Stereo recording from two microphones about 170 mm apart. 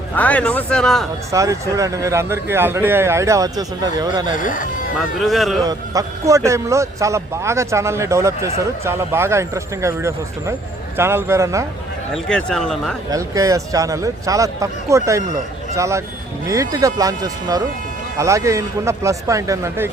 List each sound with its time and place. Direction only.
0.1 s speech: 10° left (ahead or behind)
1.3 s speech: 20° right (ahead or behind)
4.4 s speech: 50° left (ahead or behind)
5.2 s speech: centre (ahead or behind)
5.6 s speech: 20° right (ahead or behind)
12.1 s speech: 5° left (ahead or behind)
13.1 s speech: 20° right (ahead or behind)